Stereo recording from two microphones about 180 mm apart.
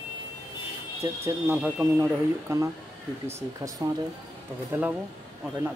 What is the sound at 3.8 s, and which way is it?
Speech, 20° right (ahead or behind).